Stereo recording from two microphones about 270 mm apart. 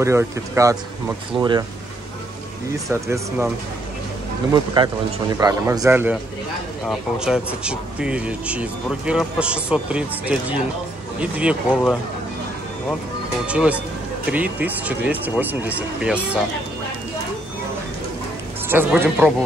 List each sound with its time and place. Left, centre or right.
0.0 s a man's voice: centre
2.9 s a man's voice: centre
4.6 s a man's voice: centre
13.5 s speech: centre
18.7 s speech: centre